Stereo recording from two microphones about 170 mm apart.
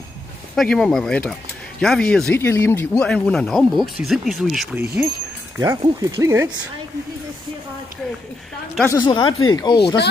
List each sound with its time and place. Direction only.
0.6 s speech: 5° left (ahead or behind)
5.6 s speech: 20° right (ahead or behind)
8.8 s speech: 25° left (ahead or behind)